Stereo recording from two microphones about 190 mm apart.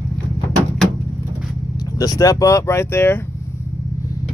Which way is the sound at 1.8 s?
20° left (ahead or behind).